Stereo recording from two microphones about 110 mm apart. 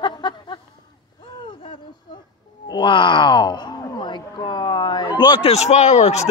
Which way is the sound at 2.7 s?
45° left (ahead or behind).